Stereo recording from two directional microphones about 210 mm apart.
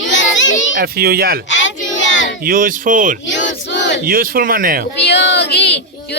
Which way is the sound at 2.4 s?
40° right (ahead or behind).